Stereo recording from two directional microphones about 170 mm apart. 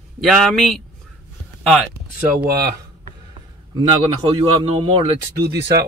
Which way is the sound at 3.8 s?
25° right (ahead or behind).